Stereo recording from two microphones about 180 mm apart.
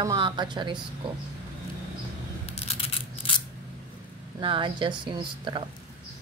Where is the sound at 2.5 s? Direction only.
35° left (ahead or behind).